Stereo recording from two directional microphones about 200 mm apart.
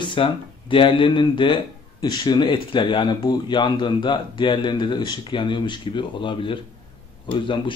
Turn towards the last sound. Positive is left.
turn(degrees=25)  # may be behind; listen again after turning